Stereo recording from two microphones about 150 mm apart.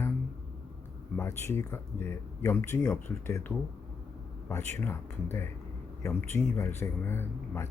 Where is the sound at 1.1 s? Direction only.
15° left (ahead or behind).